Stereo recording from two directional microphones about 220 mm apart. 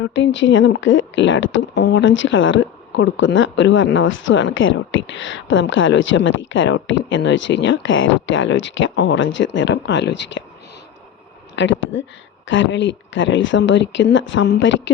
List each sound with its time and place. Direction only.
0.0 s speech: 60° left (ahead or behind)
11.5 s speech: 55° left (ahead or behind)